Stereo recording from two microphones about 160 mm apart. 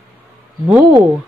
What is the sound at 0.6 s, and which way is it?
Speech, 10° right (ahead or behind).